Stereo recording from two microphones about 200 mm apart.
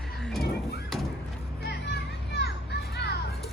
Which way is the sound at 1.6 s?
55° left (ahead or behind).